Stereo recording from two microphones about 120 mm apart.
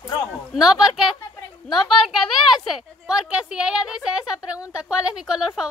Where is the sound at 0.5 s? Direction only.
5° right (ahead or behind).